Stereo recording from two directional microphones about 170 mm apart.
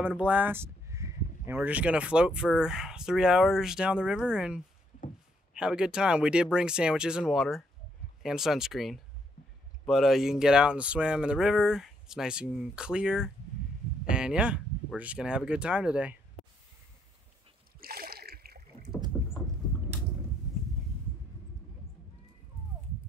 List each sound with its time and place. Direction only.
0.0 s speech: 5° right (ahead or behind)
17.7 s splash: 60° right (ahead or behind)